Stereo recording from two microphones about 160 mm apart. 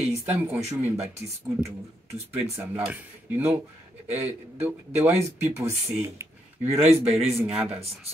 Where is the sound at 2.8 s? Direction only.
10° right (ahead or behind).